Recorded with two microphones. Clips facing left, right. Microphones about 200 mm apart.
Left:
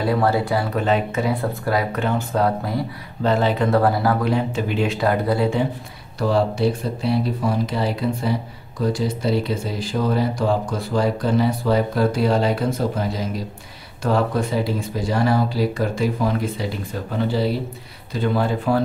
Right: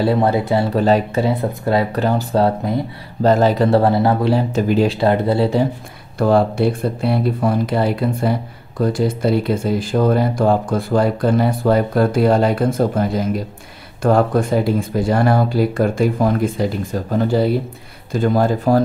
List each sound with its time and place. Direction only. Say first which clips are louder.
0.0 s speech: right 3 dB; 25° right (ahead or behind)
1.3 s speech: right 4 dB; 25° right (ahead or behind)
6.1 s speech: right 5 dB; 55° right (ahead or behind)